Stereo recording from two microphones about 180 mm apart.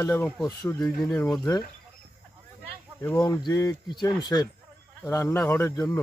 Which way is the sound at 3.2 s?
20° left (ahead or behind).